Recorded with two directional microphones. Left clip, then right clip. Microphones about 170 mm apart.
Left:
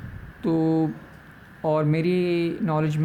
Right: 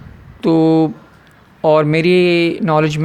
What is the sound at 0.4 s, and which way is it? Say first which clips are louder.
Speech: right 11 dB; 40° right (ahead or behind).